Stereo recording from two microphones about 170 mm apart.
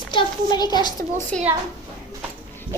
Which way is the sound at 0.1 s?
25° left (ahead or behind).